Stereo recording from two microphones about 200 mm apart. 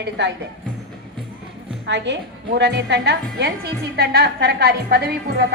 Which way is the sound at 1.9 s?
60° right (ahead or behind).